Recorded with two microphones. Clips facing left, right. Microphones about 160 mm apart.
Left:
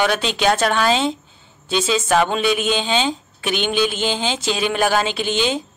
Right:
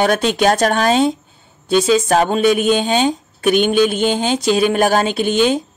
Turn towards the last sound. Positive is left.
turn(degrees=-50)  # may be behind; listen again after turning